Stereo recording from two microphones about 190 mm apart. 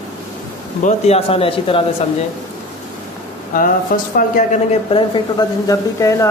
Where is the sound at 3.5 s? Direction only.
45° left (ahead or behind).